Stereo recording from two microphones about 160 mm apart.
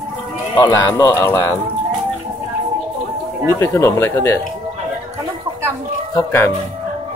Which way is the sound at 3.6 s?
15° left (ahead or behind).